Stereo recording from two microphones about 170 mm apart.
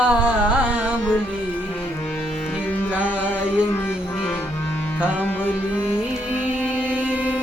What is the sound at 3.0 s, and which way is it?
Music, 10° left (ahead or behind).